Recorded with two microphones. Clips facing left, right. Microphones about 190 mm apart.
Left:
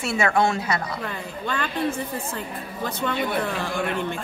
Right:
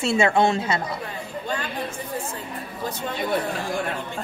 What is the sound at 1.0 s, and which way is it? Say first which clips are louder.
Speech: left 1 dB; 90° left.